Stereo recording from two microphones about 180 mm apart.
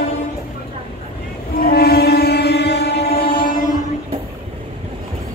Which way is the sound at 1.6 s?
60° left (ahead or behind).